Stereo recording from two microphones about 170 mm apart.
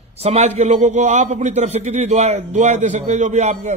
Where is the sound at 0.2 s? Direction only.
40° right (ahead or behind).